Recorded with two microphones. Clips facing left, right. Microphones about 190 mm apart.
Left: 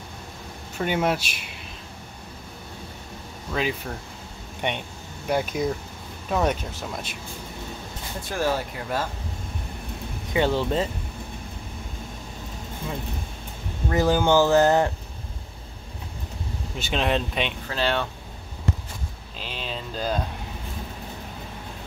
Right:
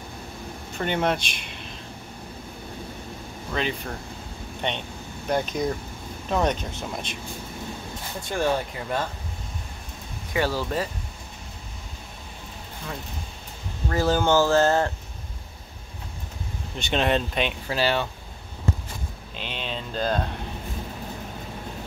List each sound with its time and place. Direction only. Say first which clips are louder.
0.7 s speech: left 1 dB; 5° left (ahead or behind)
3.5 s speech: left 1 dB; 5° left (ahead or behind)
8.3 s speech: right 1 dB; 5° left (ahead or behind)
10.3 s speech: left 3 dB; 20° left (ahead or behind)
13.8 s speech: left 1 dB; 15° left (ahead or behind)
16.7 s speech: right 1 dB; centre (ahead or behind)
19.4 s speech: right 1 dB; 5° left (ahead or behind)